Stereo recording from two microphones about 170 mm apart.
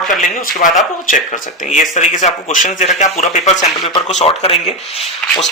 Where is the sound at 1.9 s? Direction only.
45° left (ahead or behind).